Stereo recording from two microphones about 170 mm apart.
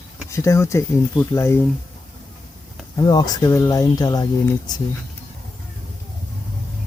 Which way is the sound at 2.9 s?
25° left (ahead or behind).